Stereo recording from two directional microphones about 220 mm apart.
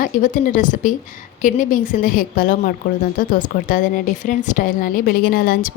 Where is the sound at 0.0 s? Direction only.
35° left (ahead or behind).